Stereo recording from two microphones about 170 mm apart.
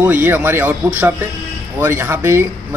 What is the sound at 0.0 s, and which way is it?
Speech, 10° right (ahead or behind).